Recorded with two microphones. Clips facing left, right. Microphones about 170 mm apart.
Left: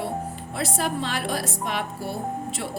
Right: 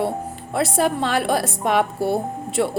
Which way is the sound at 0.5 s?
60° right (ahead or behind).